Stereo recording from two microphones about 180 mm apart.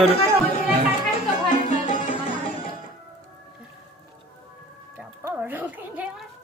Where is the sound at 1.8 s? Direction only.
45° left (ahead or behind).